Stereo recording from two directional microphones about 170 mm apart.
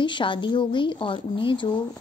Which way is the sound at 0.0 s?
30° left (ahead or behind).